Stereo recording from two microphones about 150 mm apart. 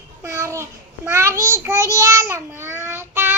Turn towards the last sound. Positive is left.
turn(degrees=-15)  # may be behind; listen again after turning